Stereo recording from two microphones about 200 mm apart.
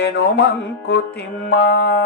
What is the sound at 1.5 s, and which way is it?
Speech, 60° left (ahead or behind).